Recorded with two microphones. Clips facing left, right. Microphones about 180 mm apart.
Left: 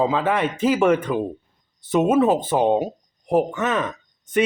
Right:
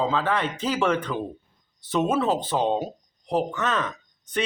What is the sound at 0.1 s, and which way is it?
A man's voice, 15° left (ahead or behind).